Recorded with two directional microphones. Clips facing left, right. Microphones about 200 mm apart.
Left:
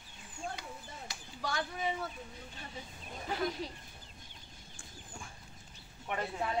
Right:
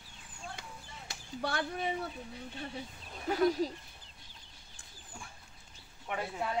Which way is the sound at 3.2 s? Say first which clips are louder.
Right 7 dB; 40° right (ahead or behind).